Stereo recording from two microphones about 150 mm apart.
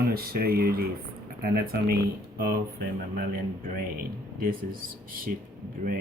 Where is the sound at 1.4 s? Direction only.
80° right.